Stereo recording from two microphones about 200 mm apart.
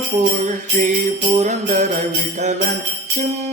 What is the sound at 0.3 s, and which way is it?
Jingle bell, 40° right (ahead or behind).